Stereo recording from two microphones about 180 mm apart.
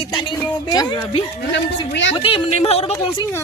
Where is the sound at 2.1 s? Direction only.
30° left (ahead or behind).